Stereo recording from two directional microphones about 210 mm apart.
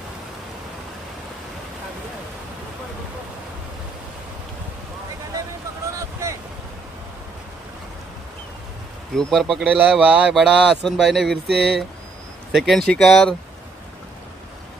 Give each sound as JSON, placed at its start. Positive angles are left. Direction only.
{"t": 9.1, "sound": "speech", "side_deg": 0}
{"t": 11.4, "sound": "a sound", "side_deg": -50}
{"t": 12.5, "sound": "speech", "side_deg": 0}